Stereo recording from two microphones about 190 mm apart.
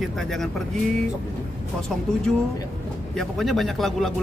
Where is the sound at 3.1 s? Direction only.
Centre (ahead or behind).